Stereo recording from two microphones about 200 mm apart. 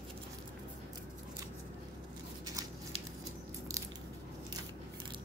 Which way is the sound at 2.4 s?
15° right (ahead or behind).